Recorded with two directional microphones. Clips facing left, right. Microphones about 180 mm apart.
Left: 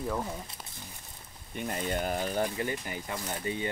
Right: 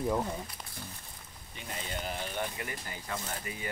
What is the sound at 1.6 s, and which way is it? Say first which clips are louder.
Speech: left 8 dB; 50° left (ahead or behind).